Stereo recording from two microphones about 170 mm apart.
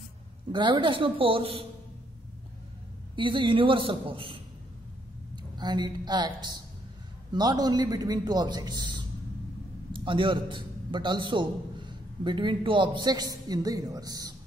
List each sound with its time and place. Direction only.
0.5 s a man's voice: 30° right (ahead or behind)
3.2 s a man's voice: 30° right (ahead or behind)